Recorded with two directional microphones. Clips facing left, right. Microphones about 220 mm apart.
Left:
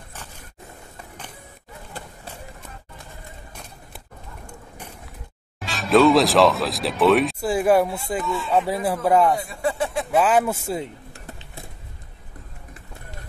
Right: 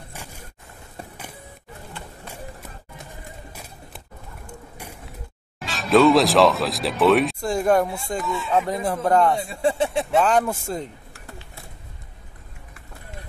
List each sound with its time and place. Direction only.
4.5 s vehicle: 10° right (ahead or behind)
5.7 s speech: centre (ahead or behind)
9.4 s speech: 25° right (ahead or behind)
10.1 s speech: 5° left (ahead or behind)